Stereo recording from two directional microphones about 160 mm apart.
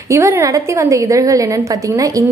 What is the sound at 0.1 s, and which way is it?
A woman's voice, 15° right (ahead or behind).